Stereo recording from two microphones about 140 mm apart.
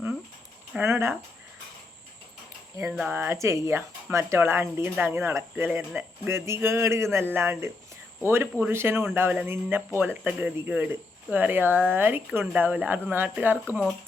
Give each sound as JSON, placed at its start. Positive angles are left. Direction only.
{"t": 0.8, "sound": "speech", "side_deg": -15}
{"t": 2.7, "sound": "speech", "side_deg": -10}